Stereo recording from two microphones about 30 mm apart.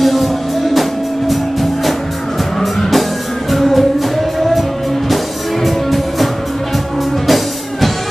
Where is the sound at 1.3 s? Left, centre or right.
Centre.